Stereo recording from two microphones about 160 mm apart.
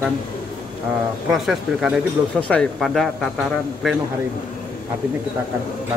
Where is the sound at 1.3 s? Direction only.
Centre (ahead or behind).